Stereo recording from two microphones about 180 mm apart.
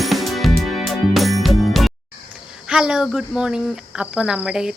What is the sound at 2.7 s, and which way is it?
Speech, 5° right (ahead or behind).